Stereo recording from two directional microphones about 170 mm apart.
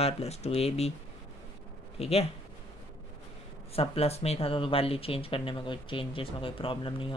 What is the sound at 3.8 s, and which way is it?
Speech, 35° left (ahead or behind).